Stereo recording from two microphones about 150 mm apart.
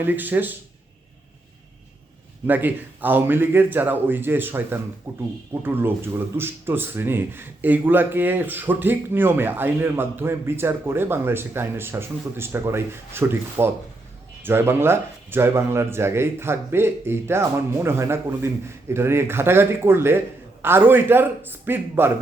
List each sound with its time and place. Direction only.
0.0 s speech: 10° right (ahead or behind)
2.5 s speech: 10° right (ahead or behind)